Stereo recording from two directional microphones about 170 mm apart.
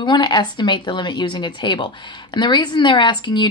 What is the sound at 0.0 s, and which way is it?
A woman's voice, 25° left (ahead or behind).